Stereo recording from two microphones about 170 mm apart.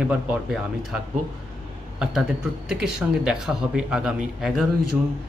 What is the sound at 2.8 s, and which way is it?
Speech, 5° right (ahead or behind).